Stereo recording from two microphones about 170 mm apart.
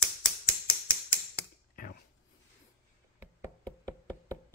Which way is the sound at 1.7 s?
60° left (ahead or behind).